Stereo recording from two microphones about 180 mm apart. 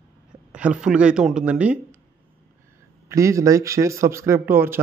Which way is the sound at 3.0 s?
15° right (ahead or behind).